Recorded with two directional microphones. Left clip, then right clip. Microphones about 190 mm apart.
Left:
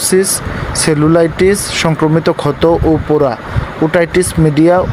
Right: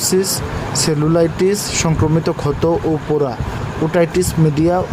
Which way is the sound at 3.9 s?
10° left (ahead or behind).